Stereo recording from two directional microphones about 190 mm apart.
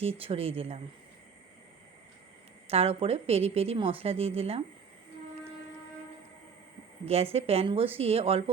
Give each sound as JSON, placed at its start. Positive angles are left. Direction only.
{"t": 0.0, "sound": "a woman's voice", "side_deg": -30}
{"t": 2.6, "sound": "a woman's voice", "side_deg": -30}
{"t": 7.0, "sound": "a woman's voice", "side_deg": -35}